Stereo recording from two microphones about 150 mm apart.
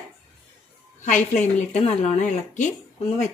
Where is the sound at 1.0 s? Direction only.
55° left (ahead or behind).